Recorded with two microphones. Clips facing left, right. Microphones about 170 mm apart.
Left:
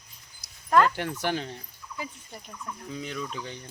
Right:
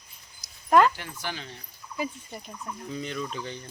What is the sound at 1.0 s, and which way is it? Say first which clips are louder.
Speech: left 8 dB; 60° left (ahead or behind).